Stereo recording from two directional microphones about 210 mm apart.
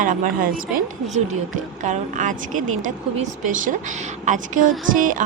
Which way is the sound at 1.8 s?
35° right (ahead or behind).